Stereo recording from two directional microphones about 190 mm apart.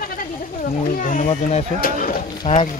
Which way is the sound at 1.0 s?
45° left (ahead or behind).